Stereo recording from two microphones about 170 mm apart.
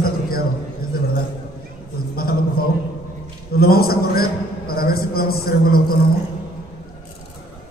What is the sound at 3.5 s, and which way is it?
A man's voice, 65° left (ahead or behind).